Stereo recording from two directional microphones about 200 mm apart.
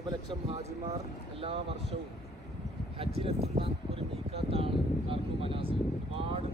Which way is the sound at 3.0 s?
30° right (ahead or behind).